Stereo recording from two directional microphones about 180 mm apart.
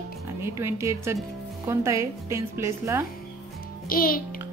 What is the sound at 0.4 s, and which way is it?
A woman's voice, 15° right (ahead or behind).